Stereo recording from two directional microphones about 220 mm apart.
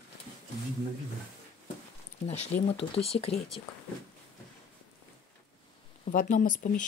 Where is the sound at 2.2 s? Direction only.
30° left (ahead or behind).